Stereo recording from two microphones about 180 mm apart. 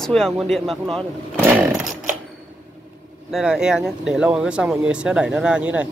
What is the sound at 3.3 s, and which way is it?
Speech, 5° right (ahead or behind).